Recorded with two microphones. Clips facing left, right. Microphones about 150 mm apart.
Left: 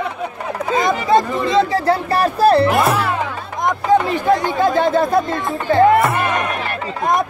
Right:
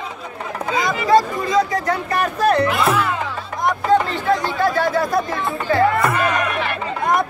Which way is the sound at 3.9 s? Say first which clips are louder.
Left 3 dB; 15° left (ahead or behind).